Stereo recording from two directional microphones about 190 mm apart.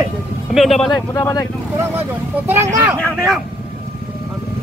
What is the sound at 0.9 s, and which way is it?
Speech, 20° left (ahead or behind).